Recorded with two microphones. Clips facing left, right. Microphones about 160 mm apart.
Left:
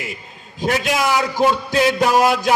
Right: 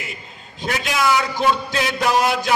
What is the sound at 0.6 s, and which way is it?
A man's voice, 45° left (ahead or behind).